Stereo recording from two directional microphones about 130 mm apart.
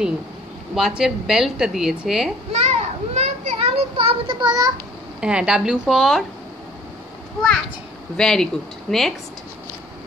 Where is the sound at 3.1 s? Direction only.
55° right (ahead or behind); by 4.7 s 40° right (ahead or behind).